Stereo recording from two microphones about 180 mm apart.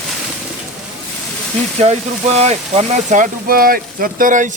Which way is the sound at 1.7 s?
35° right (ahead or behind).